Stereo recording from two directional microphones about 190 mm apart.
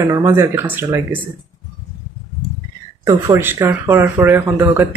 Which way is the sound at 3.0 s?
15° right (ahead or behind).